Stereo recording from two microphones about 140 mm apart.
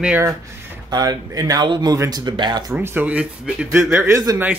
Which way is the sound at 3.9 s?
20° right (ahead or behind).